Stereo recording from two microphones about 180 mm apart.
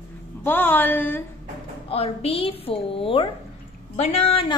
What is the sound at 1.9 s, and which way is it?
A woman's voice, 35° left (ahead or behind).